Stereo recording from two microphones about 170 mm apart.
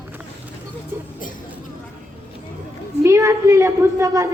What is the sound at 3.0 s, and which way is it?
A woman's voice, 20° right (ahead or behind).